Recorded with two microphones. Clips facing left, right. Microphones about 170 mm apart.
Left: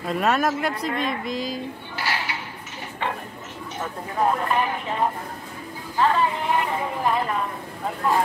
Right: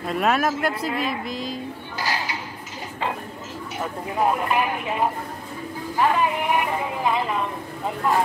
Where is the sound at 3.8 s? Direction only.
10° right (ahead or behind).